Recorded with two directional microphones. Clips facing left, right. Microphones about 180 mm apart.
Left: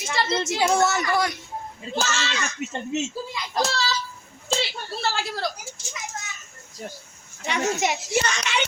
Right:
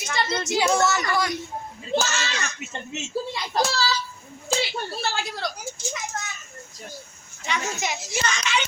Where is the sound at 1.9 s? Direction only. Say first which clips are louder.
Right 2 dB; 30° left (ahead or behind).